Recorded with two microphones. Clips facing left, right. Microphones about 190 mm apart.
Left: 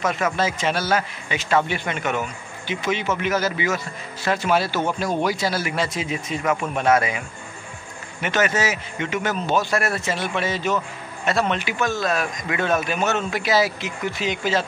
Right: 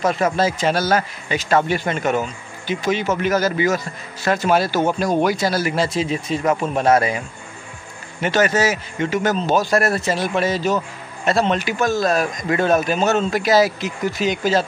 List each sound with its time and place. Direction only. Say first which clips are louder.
0.0 s speech: right 4 dB; 35° right (ahead or behind)
8.2 s speech: right 4 dB; 35° right (ahead or behind)